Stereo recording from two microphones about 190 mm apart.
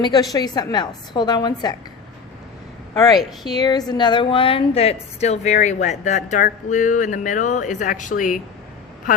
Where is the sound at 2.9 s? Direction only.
20° left (ahead or behind); by 8.4 s 45° left (ahead or behind).